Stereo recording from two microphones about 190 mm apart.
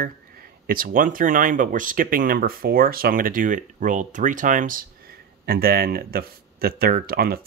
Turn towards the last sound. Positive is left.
turn(degrees=-50)  # may be behind; listen again after turning